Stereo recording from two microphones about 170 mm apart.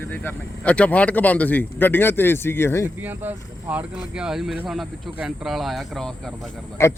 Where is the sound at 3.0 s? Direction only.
10° right (ahead or behind).